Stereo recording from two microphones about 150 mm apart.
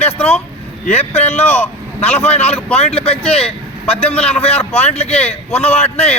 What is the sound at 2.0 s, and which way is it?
A man's voice, 45° left (ahead or behind).